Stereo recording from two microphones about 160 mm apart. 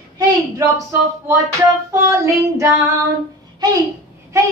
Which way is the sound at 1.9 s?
20° right (ahead or behind).